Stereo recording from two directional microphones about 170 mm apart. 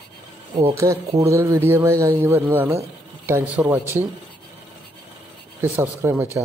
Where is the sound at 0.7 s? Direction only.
20° right (ahead or behind).